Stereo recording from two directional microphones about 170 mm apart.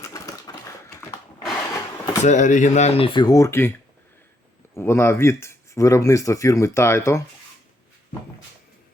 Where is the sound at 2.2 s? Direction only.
45° left (ahead or behind); by 3.7 s 15° left (ahead or behind).